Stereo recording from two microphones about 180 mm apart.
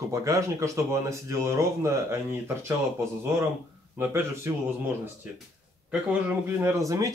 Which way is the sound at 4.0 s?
15° right (ahead or behind).